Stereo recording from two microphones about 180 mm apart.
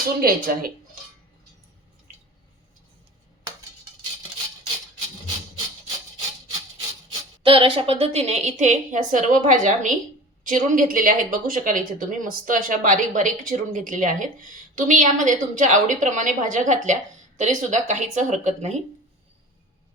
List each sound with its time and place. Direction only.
0.2 s speech: 55° right (ahead or behind)
7.4 s a woman's voice: 30° right (ahead or behind)